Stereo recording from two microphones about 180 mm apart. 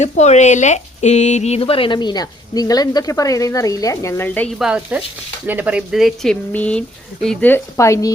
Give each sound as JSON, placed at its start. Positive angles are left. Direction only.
{"t": 0.0, "sound": "speech", "side_deg": 40}
{"t": 4.5, "sound": "speech", "side_deg": -5}